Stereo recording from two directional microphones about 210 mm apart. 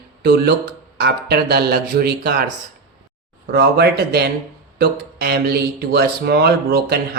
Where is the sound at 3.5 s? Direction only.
50° right (ahead or behind).